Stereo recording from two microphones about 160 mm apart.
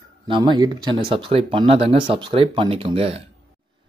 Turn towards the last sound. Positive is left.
turn(degrees=-35)  # may be behind; listen again after turning